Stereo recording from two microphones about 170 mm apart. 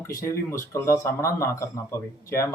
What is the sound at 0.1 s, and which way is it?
Speech, 20° left (ahead or behind).